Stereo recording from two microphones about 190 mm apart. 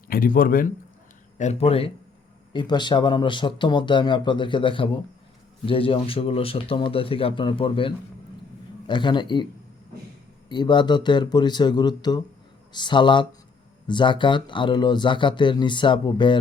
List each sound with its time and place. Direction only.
0.1 s speech: 50° left (ahead or behind)
1.4 s speech: 35° left (ahead or behind)
10.5 s speech: 25° left (ahead or behind)